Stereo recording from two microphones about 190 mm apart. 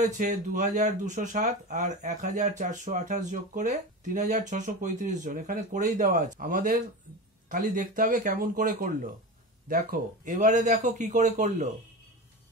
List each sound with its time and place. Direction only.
0.0 s speech: 45° right (ahead or behind)